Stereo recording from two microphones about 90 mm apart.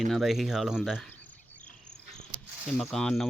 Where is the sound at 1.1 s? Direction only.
20° left (ahead or behind).